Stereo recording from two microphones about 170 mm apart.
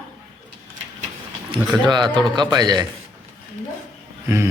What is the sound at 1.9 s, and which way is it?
Speech, 25° right (ahead or behind).